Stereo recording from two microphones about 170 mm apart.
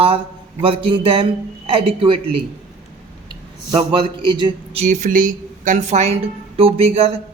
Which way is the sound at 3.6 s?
30° right (ahead or behind).